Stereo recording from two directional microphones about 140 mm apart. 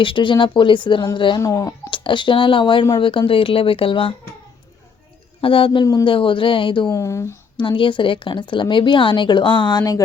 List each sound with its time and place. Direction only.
0.0 s a woman's voice: 35° left (ahead or behind)
1.4 s speech: 20° left (ahead or behind)
1.9 s a woman's voice: 35° left (ahead or behind)
5.4 s a woman's voice: 40° left (ahead or behind)
6.1 s a woman's voice: 40° left (ahead or behind)
6.9 s speech: 20° left (ahead or behind)
7.5 s a woman's voice: 35° left (ahead or behind)